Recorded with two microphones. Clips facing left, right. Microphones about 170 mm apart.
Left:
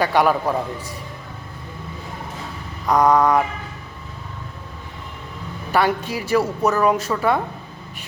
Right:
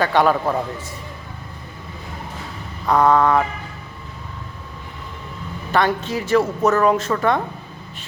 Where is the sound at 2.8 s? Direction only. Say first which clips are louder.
Even; 15° left (ahead or behind).